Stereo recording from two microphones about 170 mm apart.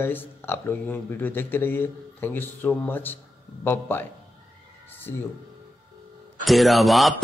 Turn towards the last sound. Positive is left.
turn(degrees=0)  # may be behind; listen again after turning